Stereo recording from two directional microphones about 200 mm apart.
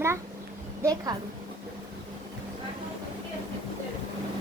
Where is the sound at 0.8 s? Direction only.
20° right (ahead or behind).